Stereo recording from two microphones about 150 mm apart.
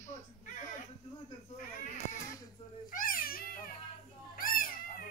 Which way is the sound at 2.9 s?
65° left (ahead or behind).